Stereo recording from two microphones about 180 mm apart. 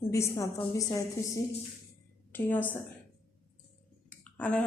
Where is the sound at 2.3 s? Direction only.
10° left (ahead or behind).